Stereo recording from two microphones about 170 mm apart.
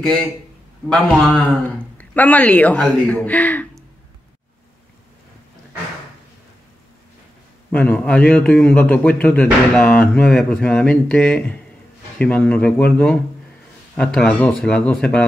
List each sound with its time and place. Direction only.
0.8 s speech: 5° left (ahead or behind)
7.7 s speech: 10° left (ahead or behind)